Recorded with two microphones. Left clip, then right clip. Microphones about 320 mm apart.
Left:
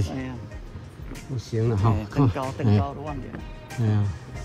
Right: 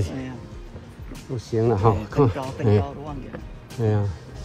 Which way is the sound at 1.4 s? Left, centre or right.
Centre.